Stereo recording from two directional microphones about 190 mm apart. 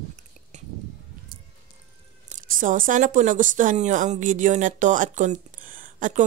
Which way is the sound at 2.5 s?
45° right (ahead or behind).